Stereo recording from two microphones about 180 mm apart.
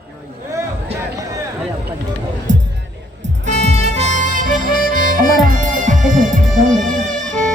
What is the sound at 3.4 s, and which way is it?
Harmonica, 40° right (ahead or behind).